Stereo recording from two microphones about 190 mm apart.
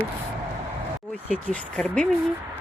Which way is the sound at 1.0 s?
Centre (ahead or behind).